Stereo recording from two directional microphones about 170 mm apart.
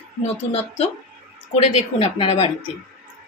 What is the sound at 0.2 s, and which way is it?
Speech, 35° left (ahead or behind).